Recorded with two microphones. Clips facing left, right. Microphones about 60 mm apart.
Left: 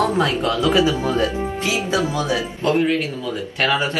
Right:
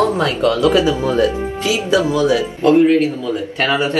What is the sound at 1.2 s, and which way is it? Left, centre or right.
Speech, left.